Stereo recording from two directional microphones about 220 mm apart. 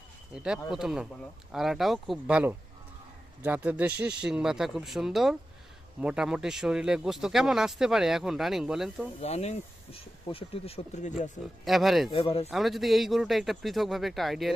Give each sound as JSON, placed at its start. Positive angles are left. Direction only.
{"t": 0.3, "sound": "speech", "side_deg": -5}
{"t": 9.2, "sound": "speech", "side_deg": 30}
{"t": 11.6, "sound": "speech", "side_deg": 0}
{"t": 12.1, "sound": "speech", "side_deg": 25}
{"t": 12.5, "sound": "speech", "side_deg": 0}